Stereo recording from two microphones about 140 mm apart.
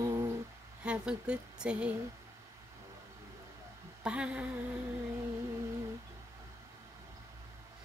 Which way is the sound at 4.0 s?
10° right (ahead or behind).